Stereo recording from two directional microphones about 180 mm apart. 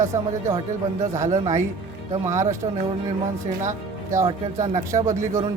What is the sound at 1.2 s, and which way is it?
Speech, 40° right (ahead or behind).